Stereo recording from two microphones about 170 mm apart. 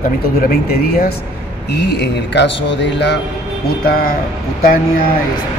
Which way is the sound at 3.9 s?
60° left (ahead or behind).